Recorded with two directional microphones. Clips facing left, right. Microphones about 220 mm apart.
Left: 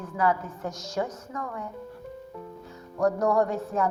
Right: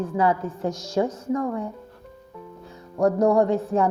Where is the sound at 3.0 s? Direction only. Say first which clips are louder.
Right 5 dB; 25° right (ahead or behind).